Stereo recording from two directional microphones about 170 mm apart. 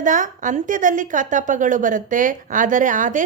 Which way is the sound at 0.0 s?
50° right (ahead or behind).